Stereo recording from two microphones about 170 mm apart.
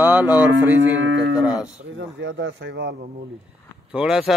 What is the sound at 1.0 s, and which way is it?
Cattle, 90° right.